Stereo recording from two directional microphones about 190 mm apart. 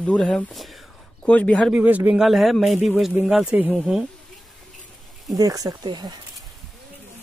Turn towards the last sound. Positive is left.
turn(degrees=-20)  # may be behind; listen again after turning